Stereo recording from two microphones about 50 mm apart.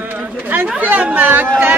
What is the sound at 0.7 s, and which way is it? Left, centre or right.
Speech, right.